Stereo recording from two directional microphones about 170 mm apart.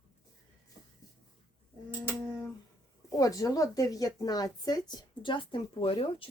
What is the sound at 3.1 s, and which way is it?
A woman's voice, 20° left (ahead or behind).